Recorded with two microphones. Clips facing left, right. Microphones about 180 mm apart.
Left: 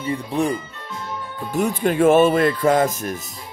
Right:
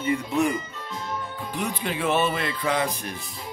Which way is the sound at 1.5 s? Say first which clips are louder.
Left 10 dB; 45° left (ahead or behind).